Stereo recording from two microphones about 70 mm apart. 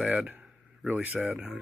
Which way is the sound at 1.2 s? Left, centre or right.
Centre.